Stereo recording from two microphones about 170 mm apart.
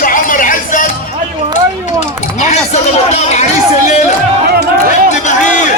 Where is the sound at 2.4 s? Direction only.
40° left (ahead or behind).